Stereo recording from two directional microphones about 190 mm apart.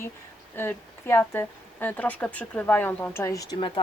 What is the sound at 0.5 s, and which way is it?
A woman's voice, 10° left (ahead or behind).